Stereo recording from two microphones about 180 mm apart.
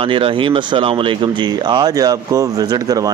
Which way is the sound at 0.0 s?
30° right (ahead or behind).